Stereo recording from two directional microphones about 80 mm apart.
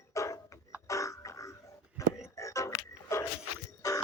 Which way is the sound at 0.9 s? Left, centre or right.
Left.